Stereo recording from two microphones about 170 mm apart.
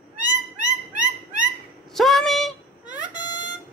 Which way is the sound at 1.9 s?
Centre (ahead or behind).